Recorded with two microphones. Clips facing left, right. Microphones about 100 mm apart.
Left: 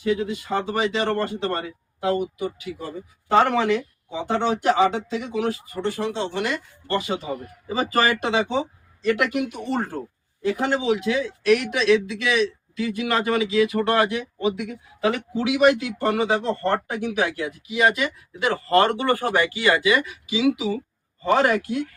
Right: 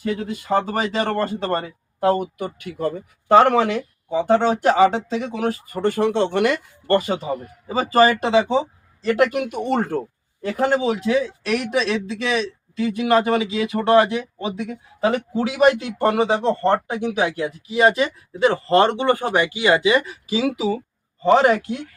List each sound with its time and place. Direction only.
0.0 s speech: 45° right (ahead or behind)
7.7 s a man's voice: 35° right (ahead or behind)
9.5 s speech: 65° right (ahead or behind)
10.4 s a man's voice: 40° right (ahead or behind)
21.2 s speech: 25° right (ahead or behind)